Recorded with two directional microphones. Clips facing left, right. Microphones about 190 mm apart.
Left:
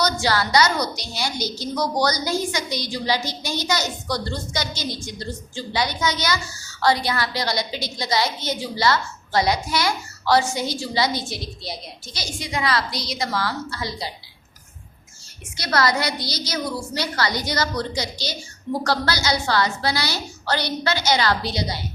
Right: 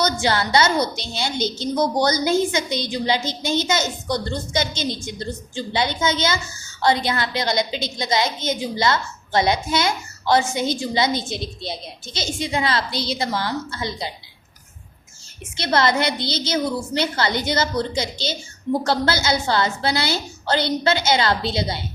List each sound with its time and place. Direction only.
0.0 s a woman's voice: 25° right (ahead or behind)
15.5 s a woman's voice: 25° right (ahead or behind)